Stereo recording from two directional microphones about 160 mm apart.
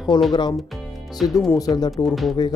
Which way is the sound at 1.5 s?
25° left (ahead or behind).